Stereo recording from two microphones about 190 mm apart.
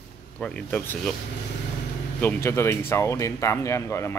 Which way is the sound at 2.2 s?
15° left (ahead or behind).